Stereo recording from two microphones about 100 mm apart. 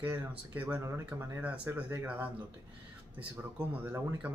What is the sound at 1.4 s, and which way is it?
Speech, 15° right (ahead or behind).